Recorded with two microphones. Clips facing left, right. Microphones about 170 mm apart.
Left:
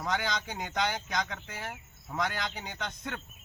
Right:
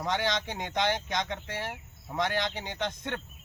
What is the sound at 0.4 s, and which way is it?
A man's voice, 25° right (ahead or behind).